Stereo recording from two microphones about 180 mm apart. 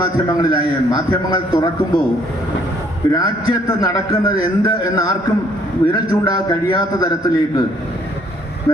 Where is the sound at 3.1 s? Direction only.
20° left (ahead or behind).